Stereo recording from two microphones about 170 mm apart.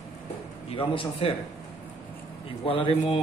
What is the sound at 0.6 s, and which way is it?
Speech, 30° left (ahead or behind).